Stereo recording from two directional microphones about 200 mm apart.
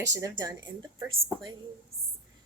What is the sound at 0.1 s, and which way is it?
Speech, 15° right (ahead or behind).